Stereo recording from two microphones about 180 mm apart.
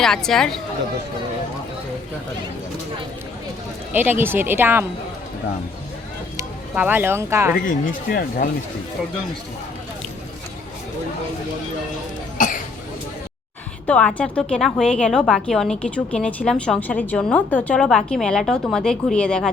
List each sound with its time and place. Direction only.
0.0 s a woman's voice: 5° left (ahead or behind)
3.9 s speech: 10° right (ahead or behind)
6.3 s speech: 10° right (ahead or behind)
7.6 s speech: 50° left (ahead or behind)
12.4 s cough: 45° left (ahead or behind)
13.8 s a woman's voice: 5° left (ahead or behind)